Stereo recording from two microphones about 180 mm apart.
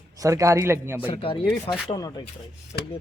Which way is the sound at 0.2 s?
15° right (ahead or behind).